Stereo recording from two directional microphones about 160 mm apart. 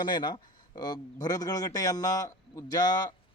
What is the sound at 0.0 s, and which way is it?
A man's voice, 25° left (ahead or behind).